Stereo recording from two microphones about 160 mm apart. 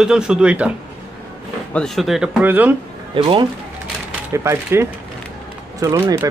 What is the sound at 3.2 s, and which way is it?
Speech, 35° right (ahead or behind).